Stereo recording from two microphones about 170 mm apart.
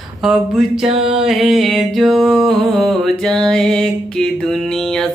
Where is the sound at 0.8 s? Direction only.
35° right (ahead or behind).